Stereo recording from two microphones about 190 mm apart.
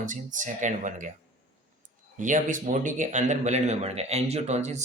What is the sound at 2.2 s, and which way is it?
Speech, 40° right (ahead or behind).